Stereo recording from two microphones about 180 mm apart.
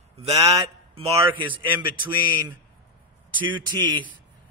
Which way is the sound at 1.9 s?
25° right (ahead or behind).